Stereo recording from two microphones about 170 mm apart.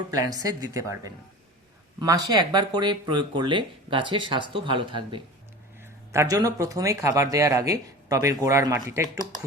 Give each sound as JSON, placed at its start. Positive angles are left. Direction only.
{"t": 0.1, "sound": "speech", "side_deg": -20}
{"t": 5.8, "sound": "speech", "side_deg": -15}